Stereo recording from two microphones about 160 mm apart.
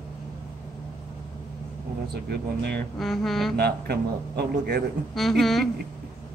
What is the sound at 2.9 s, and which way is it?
Speech, centre (ahead or behind).